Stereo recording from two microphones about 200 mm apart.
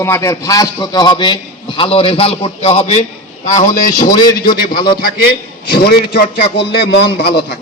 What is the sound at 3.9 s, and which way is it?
A man's voice, 20° left (ahead or behind).